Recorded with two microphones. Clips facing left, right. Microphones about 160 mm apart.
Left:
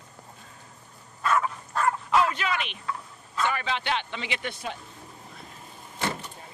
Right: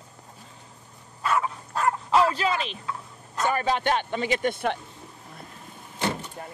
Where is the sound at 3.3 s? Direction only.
40° right (ahead or behind).